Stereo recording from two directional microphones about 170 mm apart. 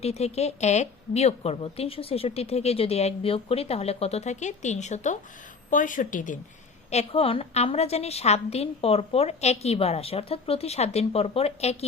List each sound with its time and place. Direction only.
0.0 s a woman's voice: 35° left (ahead or behind)
6.9 s a woman's voice: 35° left (ahead or behind)